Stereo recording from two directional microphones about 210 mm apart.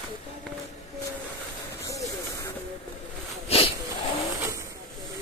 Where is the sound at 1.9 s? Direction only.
15° left (ahead or behind).